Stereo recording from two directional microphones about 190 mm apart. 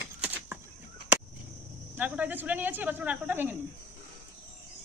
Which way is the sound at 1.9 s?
10° right (ahead or behind).